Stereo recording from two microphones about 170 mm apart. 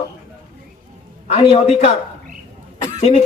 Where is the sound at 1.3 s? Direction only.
35° left (ahead or behind).